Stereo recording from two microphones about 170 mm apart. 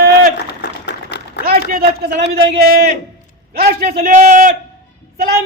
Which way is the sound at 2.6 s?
60° right (ahead or behind).